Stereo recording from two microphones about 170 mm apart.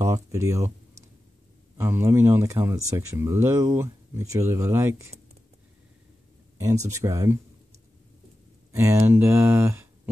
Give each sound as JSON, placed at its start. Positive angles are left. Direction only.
{"t": 0.0, "sound": "speech", "side_deg": -20}
{"t": 1.8, "sound": "speech", "side_deg": -15}
{"t": 6.6, "sound": "speech", "side_deg": -15}
{"t": 8.7, "sound": "speech", "side_deg": -15}